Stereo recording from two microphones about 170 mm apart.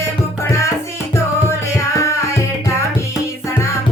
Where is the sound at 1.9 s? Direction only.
15° left (ahead or behind).